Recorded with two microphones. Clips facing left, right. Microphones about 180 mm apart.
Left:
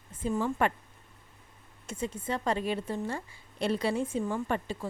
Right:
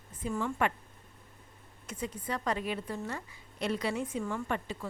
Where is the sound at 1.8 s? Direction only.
25° left (ahead or behind).